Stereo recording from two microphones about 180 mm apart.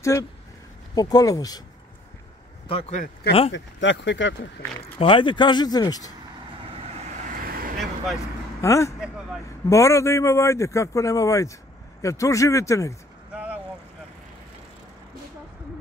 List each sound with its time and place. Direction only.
0.1 s speech: 15° left (ahead or behind)
2.7 s speech: 35° left (ahead or behind)
3.5 s speech: 85° left
4.9 s speech: 30° left (ahead or behind)
7.4 s vehicle: 55° right (ahead or behind)
8.5 s speech: 15° left (ahead or behind)
13.3 s vehicle: 10° right (ahead or behind)